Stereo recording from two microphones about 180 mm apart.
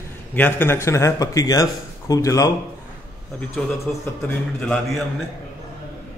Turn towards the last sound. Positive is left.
turn(degrees=5)  # may be behind; listen again after turning